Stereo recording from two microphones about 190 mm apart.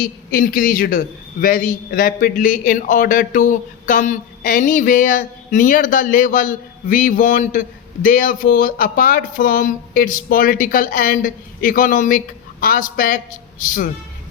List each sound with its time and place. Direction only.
0.0 s a man's voice: 50° left (ahead or behind)